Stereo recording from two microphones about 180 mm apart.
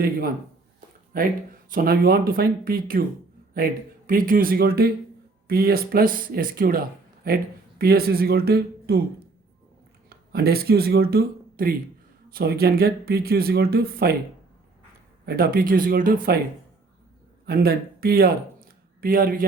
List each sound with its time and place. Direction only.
1.1 s speech: 50° right (ahead or behind)
10.1 s speech: 60° right (ahead or behind)
15.3 s speech: 55° right (ahead or behind)
17.4 s speech: 60° right (ahead or behind)